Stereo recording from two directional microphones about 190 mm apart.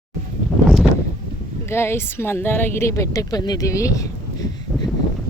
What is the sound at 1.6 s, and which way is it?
Speech, 15° left (ahead or behind).